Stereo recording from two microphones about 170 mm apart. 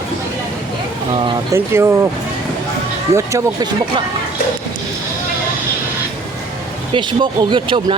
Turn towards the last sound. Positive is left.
turn(degrees=-30)  # may be behind; listen again after turning